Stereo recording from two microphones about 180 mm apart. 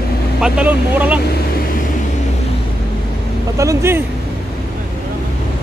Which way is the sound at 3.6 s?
15° right (ahead or behind).